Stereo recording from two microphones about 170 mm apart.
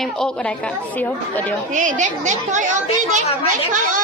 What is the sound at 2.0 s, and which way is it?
A woman's voice, 45° right (ahead or behind).